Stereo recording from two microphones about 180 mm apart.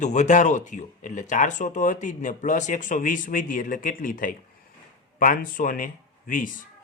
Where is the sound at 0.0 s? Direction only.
40° left (ahead or behind).